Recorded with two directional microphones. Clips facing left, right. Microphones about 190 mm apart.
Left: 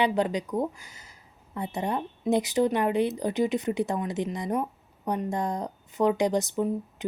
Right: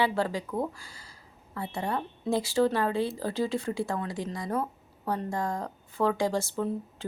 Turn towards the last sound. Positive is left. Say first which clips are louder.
# left 3 dB
turn(degrees=15)  # may be behind; listen again after turning